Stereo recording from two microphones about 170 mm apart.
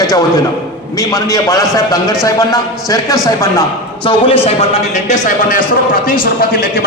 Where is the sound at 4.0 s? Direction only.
30° left (ahead or behind); by 5.6 s 50° left (ahead or behind).